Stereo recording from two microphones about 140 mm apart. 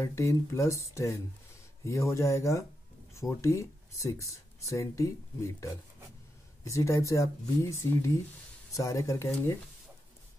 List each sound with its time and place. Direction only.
0.0 s speech: 20° left (ahead or behind)